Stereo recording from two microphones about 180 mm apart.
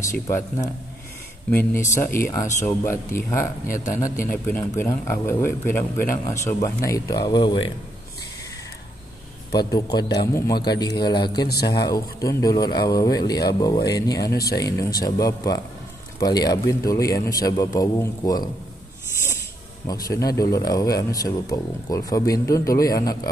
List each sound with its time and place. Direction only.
0.1 s a man's voice: 15° left (ahead or behind)
9.5 s speech: 20° left (ahead or behind)
11.4 s a man's voice: 60° left (ahead or behind)
11.7 s speech: 20° left (ahead or behind)
14.3 s a man's voice: 60° left (ahead or behind)
14.6 s speech: 20° left (ahead or behind)
19.9 s speech: 20° left (ahead or behind)